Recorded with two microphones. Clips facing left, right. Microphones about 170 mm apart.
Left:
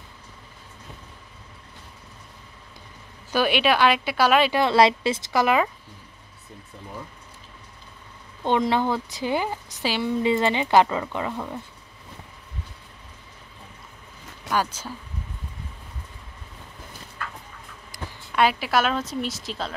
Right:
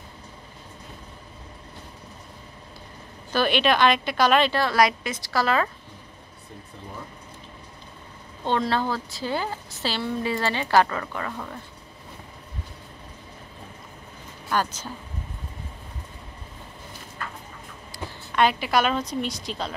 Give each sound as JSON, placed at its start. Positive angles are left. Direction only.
{"t": 3.3, "sound": "a woman's voice", "side_deg": 10}
{"t": 4.6, "sound": "a woman's voice", "side_deg": 25}
{"t": 8.5, "sound": "a woman's voice", "side_deg": 15}
{"t": 14.5, "sound": "a woman's voice", "side_deg": 10}
{"t": 18.3, "sound": "a woman's voice", "side_deg": 5}